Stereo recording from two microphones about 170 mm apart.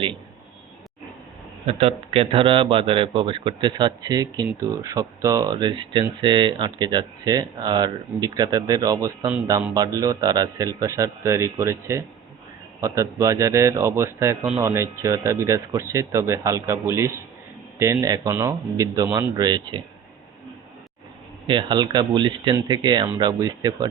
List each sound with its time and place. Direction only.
1.6 s a man's voice: 35° right (ahead or behind)
21.4 s speech: 25° right (ahead or behind)